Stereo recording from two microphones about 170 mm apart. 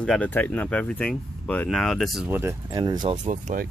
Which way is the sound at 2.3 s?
20° right (ahead or behind).